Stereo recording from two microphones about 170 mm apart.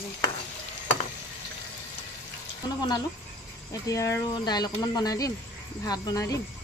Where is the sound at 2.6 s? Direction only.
25° left (ahead or behind).